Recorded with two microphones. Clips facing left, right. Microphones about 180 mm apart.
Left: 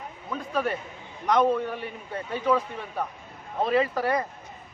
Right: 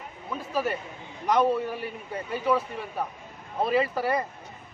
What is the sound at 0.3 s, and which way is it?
A man's voice, 5° right (ahead or behind).